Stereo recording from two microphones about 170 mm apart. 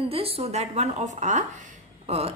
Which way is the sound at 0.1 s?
35° right (ahead or behind).